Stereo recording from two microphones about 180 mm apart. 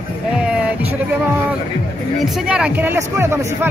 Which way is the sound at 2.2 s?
5° right (ahead or behind).